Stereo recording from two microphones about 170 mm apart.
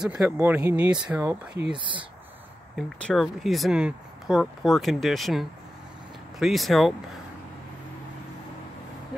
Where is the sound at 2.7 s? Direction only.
5° left (ahead or behind).